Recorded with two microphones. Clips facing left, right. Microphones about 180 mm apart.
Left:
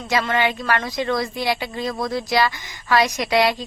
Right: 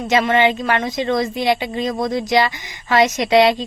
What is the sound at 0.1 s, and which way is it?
A woman's voice, 20° right (ahead or behind).